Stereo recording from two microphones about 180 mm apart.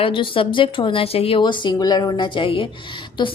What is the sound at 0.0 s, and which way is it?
A woman's voice, 30° left (ahead or behind).